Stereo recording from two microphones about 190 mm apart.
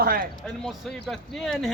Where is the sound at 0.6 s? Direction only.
Centre (ahead or behind).